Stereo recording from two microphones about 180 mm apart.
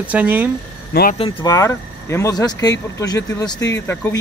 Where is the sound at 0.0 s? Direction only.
10° right (ahead or behind).